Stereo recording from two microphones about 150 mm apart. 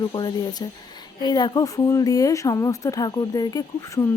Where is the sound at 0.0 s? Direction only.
30° left (ahead or behind).